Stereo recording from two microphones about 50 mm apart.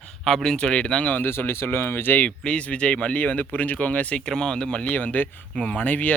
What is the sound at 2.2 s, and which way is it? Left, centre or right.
Speech, left.